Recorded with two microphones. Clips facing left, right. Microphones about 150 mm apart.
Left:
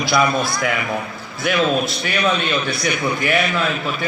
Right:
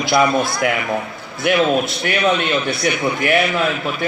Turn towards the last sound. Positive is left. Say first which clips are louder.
# right 2 dB
turn(degrees=-20)  # may be behind; listen again after turning